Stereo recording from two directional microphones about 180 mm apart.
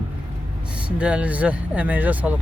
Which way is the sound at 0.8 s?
5° right (ahead or behind).